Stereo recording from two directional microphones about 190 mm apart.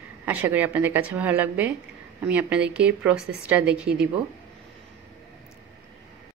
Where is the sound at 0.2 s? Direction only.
10° right (ahead or behind).